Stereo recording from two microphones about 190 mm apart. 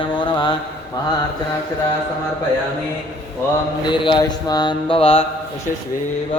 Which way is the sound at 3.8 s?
25° left (ahead or behind).